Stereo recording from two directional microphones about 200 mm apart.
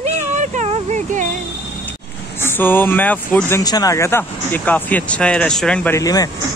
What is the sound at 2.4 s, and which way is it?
Speech, 10° left (ahead or behind).